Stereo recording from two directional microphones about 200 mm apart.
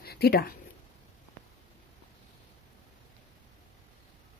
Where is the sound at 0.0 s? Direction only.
50° left (ahead or behind).